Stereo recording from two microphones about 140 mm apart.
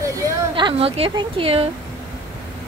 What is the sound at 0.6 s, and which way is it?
A woman's voice, 40° right (ahead or behind).